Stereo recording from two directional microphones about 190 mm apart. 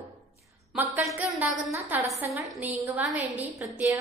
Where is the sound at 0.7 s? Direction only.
5° right (ahead or behind).